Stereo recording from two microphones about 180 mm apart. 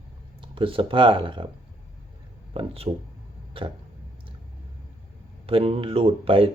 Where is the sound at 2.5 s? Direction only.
30° right (ahead or behind).